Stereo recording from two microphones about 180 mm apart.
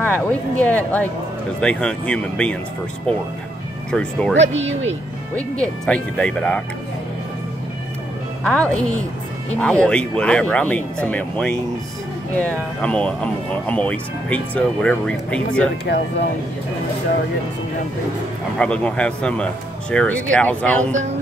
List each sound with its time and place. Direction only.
0.0 s speech: 10° left (ahead or behind)
3.9 s speech: 5° left (ahead or behind)
4.4 s speech: 40° right (ahead or behind)
5.3 s speech: 5° left (ahead or behind)
8.5 s speech: 5° left (ahead or behind)
15.8 s speech: 70° left (ahead or behind)
18.6 s speech: 5° left (ahead or behind)